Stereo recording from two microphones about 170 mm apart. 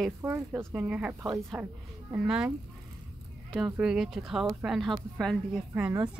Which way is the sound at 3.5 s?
5° right (ahead or behind).